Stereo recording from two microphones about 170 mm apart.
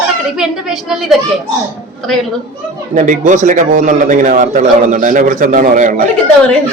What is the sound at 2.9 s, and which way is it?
A man's voice, 50° right (ahead or behind).